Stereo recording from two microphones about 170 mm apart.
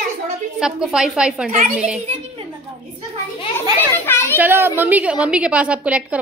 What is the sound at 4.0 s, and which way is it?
Children playing, 15° left (ahead or behind).